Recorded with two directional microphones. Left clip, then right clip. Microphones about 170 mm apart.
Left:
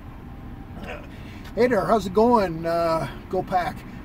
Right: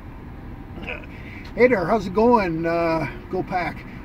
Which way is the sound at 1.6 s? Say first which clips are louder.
Right 2 dB; 15° left (ahead or behind).